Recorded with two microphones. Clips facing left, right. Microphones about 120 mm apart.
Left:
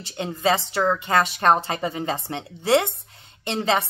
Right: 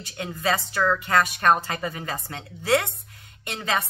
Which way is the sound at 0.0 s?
25° left (ahead or behind).